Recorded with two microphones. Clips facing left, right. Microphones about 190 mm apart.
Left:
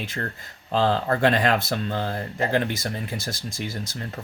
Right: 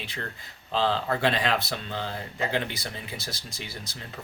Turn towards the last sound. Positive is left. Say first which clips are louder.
# left 8 dB
turn(degrees=50)  # may be behind; listen again after turning